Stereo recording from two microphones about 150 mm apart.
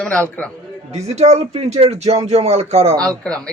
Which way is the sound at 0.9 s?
50° right (ahead or behind).